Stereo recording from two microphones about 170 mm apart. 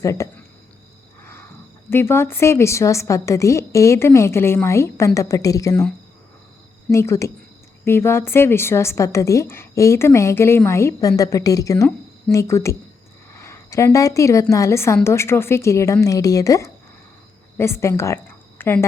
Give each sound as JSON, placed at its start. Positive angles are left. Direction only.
{"t": 0.0, "sound": "speech", "side_deg": 20}
{"t": 1.2, "sound": "wild animals", "side_deg": 15}
{"t": 1.9, "sound": "a woman's voice", "side_deg": 15}
{"t": 6.9, "sound": "a woman's voice", "side_deg": 15}